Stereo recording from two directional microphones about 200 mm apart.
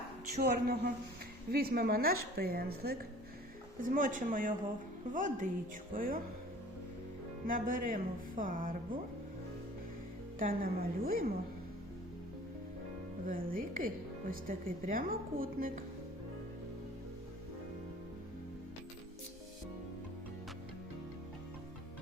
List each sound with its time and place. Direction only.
0.3 s a woman's voice: 45° right (ahead or behind)
7.4 s a woman's voice: 45° right (ahead or behind)
10.3 s a woman's voice: 45° right (ahead or behind)
13.2 s a woman's voice: 45° right (ahead or behind)